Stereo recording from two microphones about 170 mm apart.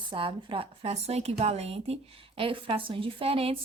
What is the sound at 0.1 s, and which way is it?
Speech, 30° right (ahead or behind).